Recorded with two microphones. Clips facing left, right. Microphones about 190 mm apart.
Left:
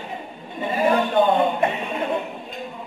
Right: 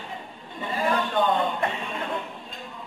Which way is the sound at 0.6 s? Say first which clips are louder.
Left 6 dB; 20° left (ahead or behind).